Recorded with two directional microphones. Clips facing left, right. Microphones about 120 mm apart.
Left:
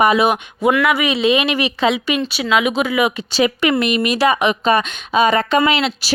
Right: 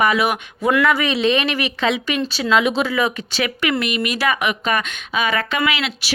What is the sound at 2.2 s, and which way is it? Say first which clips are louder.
Speech: right 2 dB; 5° left (ahead or behind).